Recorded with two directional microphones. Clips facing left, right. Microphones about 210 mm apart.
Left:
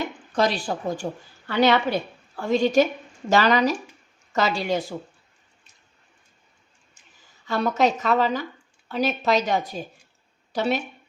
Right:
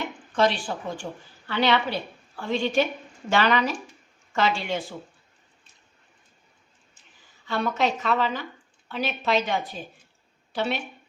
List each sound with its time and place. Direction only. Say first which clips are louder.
0.0 s a woman's voice: even; 40° left (ahead or behind)
7.4 s speech: left 4 dB; 40° left (ahead or behind)